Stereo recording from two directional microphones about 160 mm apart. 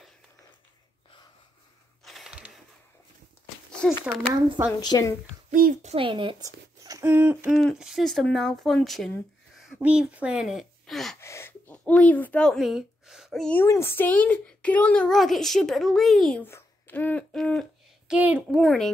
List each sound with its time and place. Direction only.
2.0 s a sound: centre (ahead or behind)
3.8 s a child's voice: 5° left (ahead or behind)
4.7 s a woman's voice: 25° left (ahead or behind)
5.5 s speech: 55° right (ahead or behind); by 7.1 s 20° right (ahead or behind)
7.1 s hoot: 10° right (ahead or behind)
7.6 s a child's voice: centre (ahead or behind)
11.1 s gasp: 15° left (ahead or behind)
13.7 s a child's voice: 15° left (ahead or behind)
16.4 s a sound: 15° left (ahead or behind)
18.1 s hoot: 10° right (ahead or behind)
18.6 s a child's voice: 5° left (ahead or behind)